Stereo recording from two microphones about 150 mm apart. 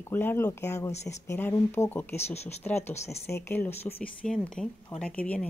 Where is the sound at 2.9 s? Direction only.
45° left (ahead or behind).